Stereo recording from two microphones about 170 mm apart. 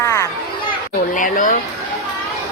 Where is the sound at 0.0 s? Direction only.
15° left (ahead or behind).